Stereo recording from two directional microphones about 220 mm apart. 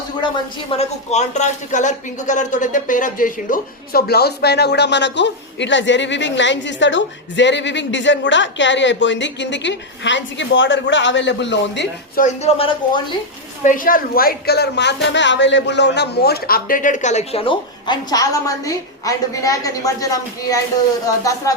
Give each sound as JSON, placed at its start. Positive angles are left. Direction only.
{"t": 0.8, "sound": "speech", "side_deg": 30}
{"t": 12.2, "sound": "speech", "side_deg": 25}
{"t": 13.7, "sound": "speech", "side_deg": 40}